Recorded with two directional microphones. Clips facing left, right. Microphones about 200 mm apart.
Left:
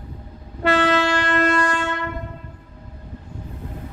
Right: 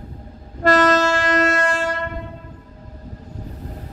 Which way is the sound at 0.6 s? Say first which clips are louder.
Right 3 dB; 45° right (ahead or behind).